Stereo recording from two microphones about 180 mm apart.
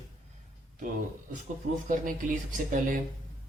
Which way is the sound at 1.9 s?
45° right (ahead or behind).